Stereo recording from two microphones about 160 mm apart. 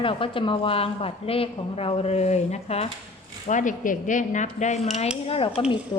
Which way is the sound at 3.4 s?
50° left (ahead or behind).